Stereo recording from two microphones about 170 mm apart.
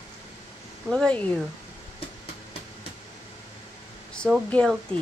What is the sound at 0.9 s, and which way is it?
Speech, 5° left (ahead or behind).